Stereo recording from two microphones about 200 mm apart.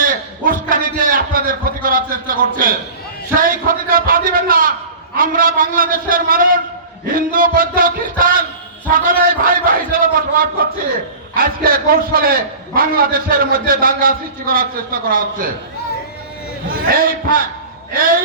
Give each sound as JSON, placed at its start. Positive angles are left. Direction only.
{"t": 0.0, "sound": "a sound", "side_deg": -45}
{"t": 3.3, "sound": "a man's voice", "side_deg": -45}
{"t": 16.9, "sound": "a man's voice", "side_deg": -45}